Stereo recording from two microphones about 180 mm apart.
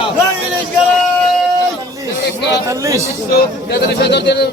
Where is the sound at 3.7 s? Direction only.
65° left (ahead or behind).